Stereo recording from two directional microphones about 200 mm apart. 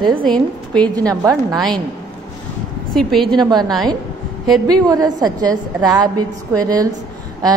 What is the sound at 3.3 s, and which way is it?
Speech, 20° right (ahead or behind).